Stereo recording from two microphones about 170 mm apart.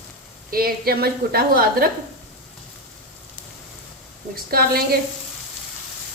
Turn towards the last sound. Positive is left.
turn(degrees=-65)  # may be behind; listen again after turning